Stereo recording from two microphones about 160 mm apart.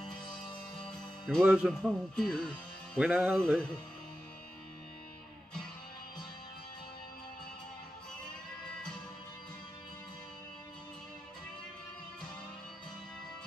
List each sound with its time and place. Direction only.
0.7 s music: 5° left (ahead or behind)
1.8 s speech: 5° left (ahead or behind)
3.1 s music: centre (ahead or behind)